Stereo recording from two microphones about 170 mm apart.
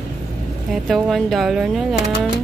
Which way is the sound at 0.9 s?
Centre (ahead or behind).